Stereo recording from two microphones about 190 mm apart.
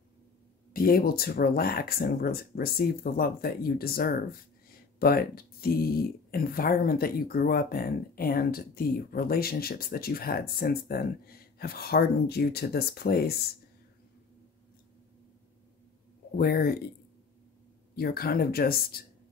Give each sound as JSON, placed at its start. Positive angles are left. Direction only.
{"t": 0.7, "sound": "speech", "side_deg": 50}
{"t": 16.3, "sound": "speech", "side_deg": 55}
{"t": 17.9, "sound": "speech", "side_deg": 55}